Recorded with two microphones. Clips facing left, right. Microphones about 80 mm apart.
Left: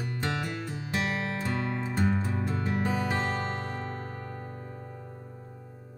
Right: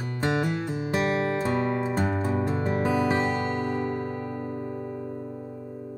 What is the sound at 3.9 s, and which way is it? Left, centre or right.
Music, right.